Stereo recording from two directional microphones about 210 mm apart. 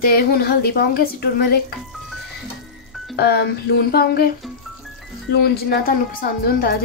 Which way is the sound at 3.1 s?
50° left (ahead or behind).